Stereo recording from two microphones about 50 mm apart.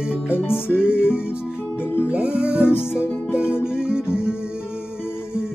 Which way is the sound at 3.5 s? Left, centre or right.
Left.